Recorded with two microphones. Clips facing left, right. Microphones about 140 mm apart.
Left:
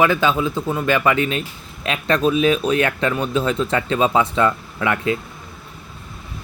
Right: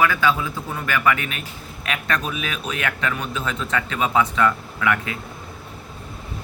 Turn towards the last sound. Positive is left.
turn(degrees=30)  # may be behind; listen again after turning